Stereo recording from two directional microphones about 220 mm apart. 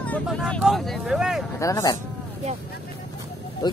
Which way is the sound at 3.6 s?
20° left (ahead or behind).